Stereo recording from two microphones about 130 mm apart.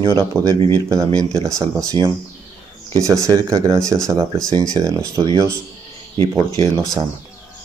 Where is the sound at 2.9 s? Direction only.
25° right (ahead or behind).